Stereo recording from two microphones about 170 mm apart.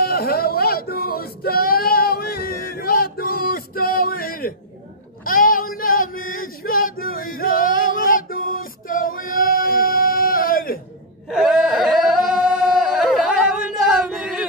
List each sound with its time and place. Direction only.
0.0 s male singing: 65° left (ahead or behind)
5.2 s female singing: 55° left (ahead or behind)
11.2 s a sound: 5° right (ahead or behind)